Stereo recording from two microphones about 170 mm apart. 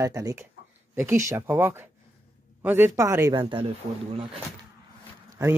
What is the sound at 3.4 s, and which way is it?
Speech, 30° right (ahead or behind).